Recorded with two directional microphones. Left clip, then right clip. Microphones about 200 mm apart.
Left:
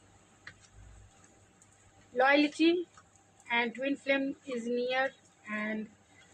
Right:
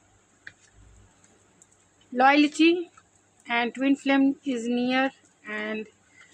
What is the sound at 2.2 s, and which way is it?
Speech, 55° right (ahead or behind).